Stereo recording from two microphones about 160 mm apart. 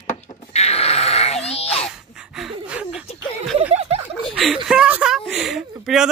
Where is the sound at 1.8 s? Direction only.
5° right (ahead or behind).